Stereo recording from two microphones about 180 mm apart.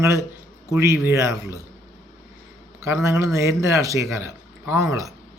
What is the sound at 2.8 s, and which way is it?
Speech, 15° right (ahead or behind).